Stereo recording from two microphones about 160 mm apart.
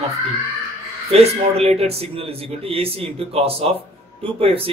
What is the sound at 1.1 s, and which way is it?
Speech, 40° right (ahead or behind).